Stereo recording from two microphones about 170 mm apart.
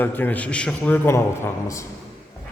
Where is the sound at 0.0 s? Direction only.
10° left (ahead or behind).